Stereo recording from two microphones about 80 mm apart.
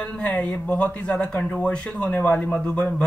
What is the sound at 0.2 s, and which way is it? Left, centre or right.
A man's voice, centre.